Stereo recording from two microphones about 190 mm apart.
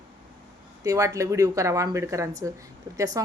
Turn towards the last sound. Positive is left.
turn(degrees=-20)  # may be behind; listen again after turning